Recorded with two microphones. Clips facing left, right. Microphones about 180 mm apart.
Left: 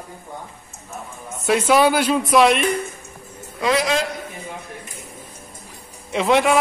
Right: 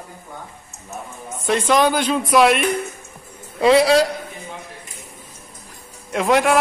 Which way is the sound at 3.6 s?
30° right (ahead or behind).